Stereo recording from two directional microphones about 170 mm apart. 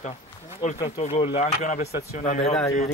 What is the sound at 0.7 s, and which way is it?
Speech, 35° left (ahead or behind).